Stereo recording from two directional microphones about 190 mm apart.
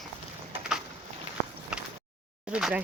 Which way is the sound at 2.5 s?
5° right (ahead or behind).